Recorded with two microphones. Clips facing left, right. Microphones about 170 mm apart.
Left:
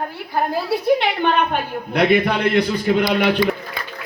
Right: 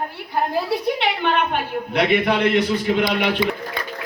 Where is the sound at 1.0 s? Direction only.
40° left (ahead or behind).